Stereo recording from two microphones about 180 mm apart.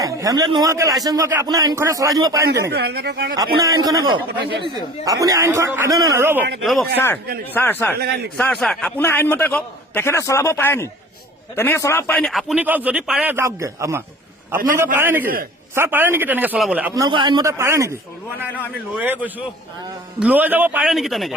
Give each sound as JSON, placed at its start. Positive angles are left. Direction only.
{"t": 0.0, "sound": "speech", "side_deg": -20}
{"t": 2.6, "sound": "speech", "side_deg": -65}
{"t": 3.6, "sound": "a man's voice", "side_deg": -20}
{"t": 6.6, "sound": "a man's voice", "side_deg": 0}
{"t": 7.5, "sound": "a man's voice", "side_deg": 10}
{"t": 7.9, "sound": "speech", "side_deg": -60}
{"t": 8.4, "sound": "a man's voice", "side_deg": 5}
{"t": 16.9, "sound": "speech", "side_deg": -25}
{"t": 18.9, "sound": "a man's voice", "side_deg": -10}